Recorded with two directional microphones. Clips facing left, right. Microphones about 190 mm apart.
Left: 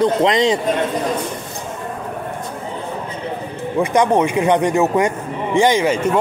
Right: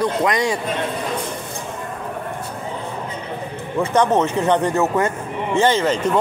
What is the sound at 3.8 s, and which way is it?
Speech, 10° left (ahead or behind).